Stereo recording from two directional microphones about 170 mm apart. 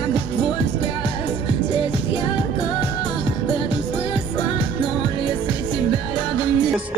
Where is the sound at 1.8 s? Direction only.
25° left (ahead or behind).